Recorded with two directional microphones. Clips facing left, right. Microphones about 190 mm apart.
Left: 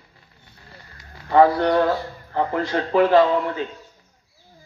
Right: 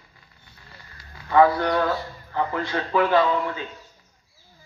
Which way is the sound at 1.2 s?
35° left (ahead or behind).